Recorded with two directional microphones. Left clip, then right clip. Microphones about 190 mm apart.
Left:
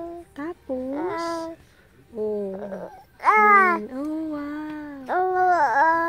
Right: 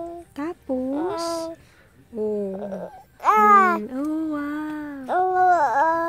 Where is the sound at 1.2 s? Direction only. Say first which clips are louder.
Right 1 dB; 30° right (ahead or behind).